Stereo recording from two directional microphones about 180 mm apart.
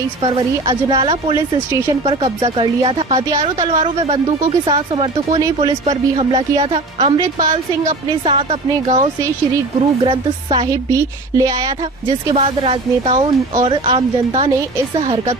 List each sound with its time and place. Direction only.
0.2 s speech: 25° right (ahead or behind)
7.2 s speech: 20° right (ahead or behind)
8.3 s speech: 35° right (ahead or behind)
10.7 s speech: 20° right (ahead or behind)
12.4 s speech: 35° right (ahead or behind)